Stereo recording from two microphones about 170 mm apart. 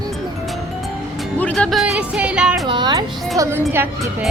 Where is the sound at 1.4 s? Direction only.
5° left (ahead or behind).